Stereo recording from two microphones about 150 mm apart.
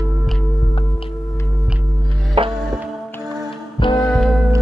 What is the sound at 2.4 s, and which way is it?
Music, 35° right (ahead or behind).